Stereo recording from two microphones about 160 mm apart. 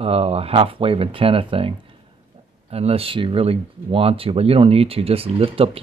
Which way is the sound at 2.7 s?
40° right (ahead or behind).